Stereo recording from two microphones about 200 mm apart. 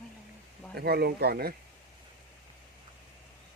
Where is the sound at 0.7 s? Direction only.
55° right (ahead or behind).